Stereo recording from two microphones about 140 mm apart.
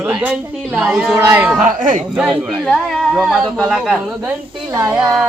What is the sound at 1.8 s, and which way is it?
Speech, 70° right (ahead or behind).